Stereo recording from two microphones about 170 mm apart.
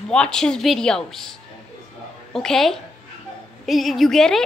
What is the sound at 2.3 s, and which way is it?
A woman's voice, centre (ahead or behind).